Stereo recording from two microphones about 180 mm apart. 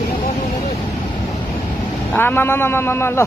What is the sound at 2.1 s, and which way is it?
A man's voice, 10° left (ahead or behind).